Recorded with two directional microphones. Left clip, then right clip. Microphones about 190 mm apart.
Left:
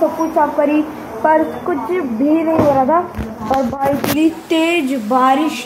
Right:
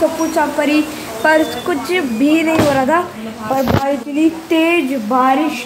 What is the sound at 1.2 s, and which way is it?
Speech, 25° right (ahead or behind).